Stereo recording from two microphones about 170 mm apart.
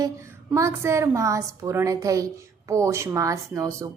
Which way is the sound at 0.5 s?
15° right (ahead or behind).